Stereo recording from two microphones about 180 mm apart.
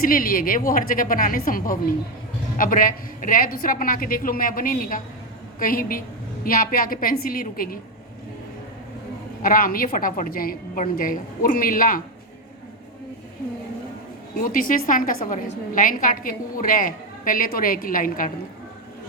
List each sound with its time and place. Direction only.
0.0 s a woman's voice: 50° left (ahead or behind)
9.4 s a woman's voice: 50° left (ahead or behind)
14.3 s a woman's voice: 50° left (ahead or behind)